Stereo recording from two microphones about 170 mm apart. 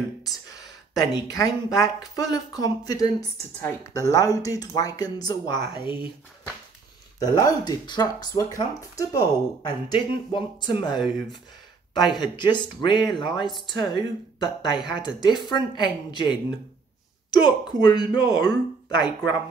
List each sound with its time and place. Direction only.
0.2 s a sound: 20° left (ahead or behind)
1.1 s speech: 20° left (ahead or behind)
7.2 s speech: 20° left (ahead or behind)
12.0 s speech: 25° left (ahead or behind)